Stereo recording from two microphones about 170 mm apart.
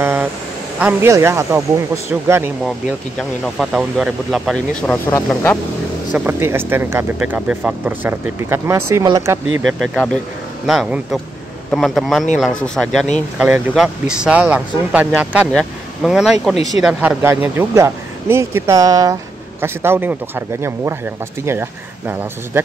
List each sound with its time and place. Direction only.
0.0 s a sound: 15° right (ahead or behind)
0.7 s speech: 5° right (ahead or behind)
3.2 s speech: centre (ahead or behind)
4.9 s speech: 15° left (ahead or behind)
6.1 s speech: 10° right (ahead or behind)
9.7 s speech: centre (ahead or behind)